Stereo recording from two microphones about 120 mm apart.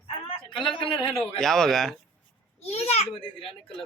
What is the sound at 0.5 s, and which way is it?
Speech, 45° left (ahead or behind).